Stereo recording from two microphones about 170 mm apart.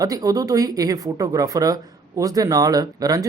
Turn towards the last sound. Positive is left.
turn(degrees=-20)  # may be behind; listen again after turning